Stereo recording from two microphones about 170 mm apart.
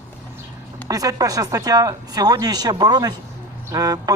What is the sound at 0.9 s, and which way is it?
Speech, 20° right (ahead or behind).